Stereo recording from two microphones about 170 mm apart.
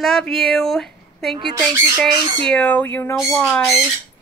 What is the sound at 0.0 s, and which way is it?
Speech, centre (ahead or behind).